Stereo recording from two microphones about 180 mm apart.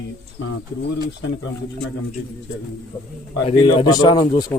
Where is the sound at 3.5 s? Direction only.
25° left (ahead or behind).